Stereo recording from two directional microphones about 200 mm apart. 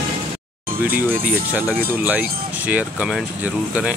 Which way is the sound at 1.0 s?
10° right (ahead or behind).